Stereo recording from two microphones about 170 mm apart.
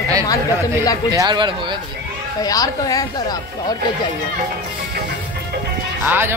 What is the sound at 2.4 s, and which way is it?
Speech, 20° left (ahead or behind).